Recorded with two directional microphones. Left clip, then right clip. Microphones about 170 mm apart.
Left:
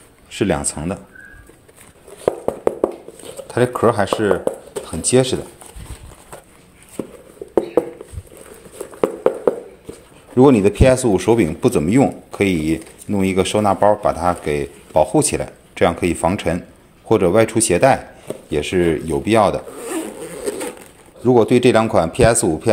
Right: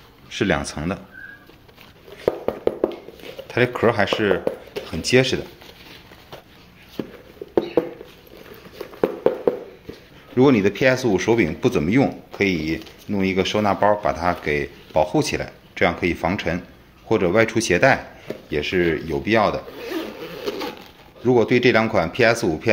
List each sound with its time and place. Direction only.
0.3 s speech: 30° left (ahead or behind)
3.4 s speech: 25° left (ahead or behind)
9.0 s a sound: 5° left (ahead or behind)
10.3 s speech: 35° left (ahead or behind)
12.3 s speech: 55° left (ahead or behind); by 18.0 s 35° left (ahead or behind)
18.5 s speech: 45° left (ahead or behind)
19.8 s zipper: 25° left (ahead or behind)
21.2 s speech: 35° left (ahead or behind)